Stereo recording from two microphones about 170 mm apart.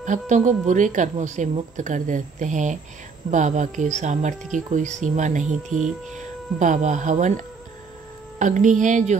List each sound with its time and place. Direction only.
0.0 s a woman's voice: 45° right (ahead or behind)
6.6 s a woman's voice: 45° right (ahead or behind)